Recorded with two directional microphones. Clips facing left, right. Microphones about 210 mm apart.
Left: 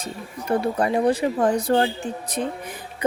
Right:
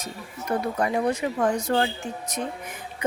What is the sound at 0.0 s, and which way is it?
Speech, 30° left (ahead or behind).